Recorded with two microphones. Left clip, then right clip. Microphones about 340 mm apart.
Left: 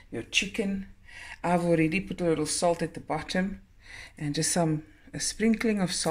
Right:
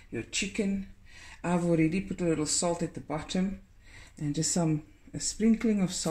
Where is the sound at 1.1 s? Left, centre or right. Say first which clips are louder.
Left 5 dB; left.